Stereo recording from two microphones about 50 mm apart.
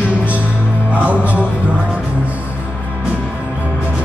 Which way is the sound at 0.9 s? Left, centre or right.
Right.